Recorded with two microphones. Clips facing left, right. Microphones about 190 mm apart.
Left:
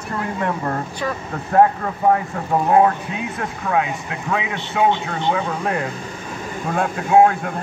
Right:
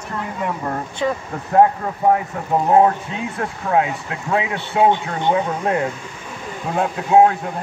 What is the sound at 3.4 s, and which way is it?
Speech, 35° right (ahead or behind).